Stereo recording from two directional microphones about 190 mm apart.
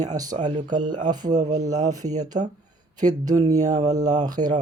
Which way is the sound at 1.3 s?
40° right (ahead or behind).